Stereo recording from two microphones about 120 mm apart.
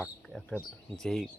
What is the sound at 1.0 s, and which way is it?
Speech, 5° left (ahead or behind).